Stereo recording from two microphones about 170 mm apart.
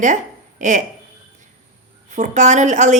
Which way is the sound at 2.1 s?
45° right (ahead or behind).